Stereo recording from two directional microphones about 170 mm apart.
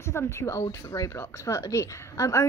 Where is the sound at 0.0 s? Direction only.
15° left (ahead or behind).